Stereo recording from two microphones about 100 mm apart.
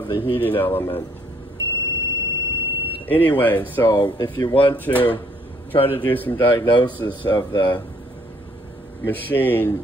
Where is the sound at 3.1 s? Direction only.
20° left (ahead or behind).